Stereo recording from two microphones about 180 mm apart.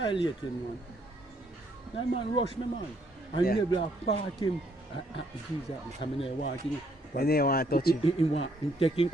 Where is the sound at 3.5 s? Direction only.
30° left (ahead or behind).